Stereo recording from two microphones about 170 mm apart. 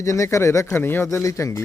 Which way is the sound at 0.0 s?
20° left (ahead or behind).